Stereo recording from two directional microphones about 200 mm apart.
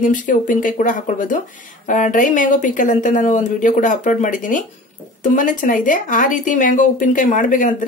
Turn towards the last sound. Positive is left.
turn(degrees=40)  # may be behind; listen again after turning